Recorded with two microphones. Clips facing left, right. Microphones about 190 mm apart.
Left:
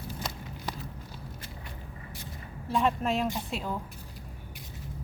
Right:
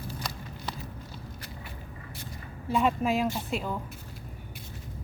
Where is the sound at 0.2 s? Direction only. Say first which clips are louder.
Even; 25° left (ahead or behind).